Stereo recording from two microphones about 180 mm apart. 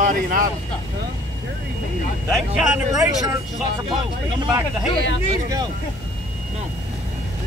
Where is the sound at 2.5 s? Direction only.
5° right (ahead or behind).